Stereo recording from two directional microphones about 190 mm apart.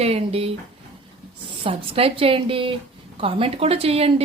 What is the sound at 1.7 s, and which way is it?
Speech, 30° right (ahead or behind).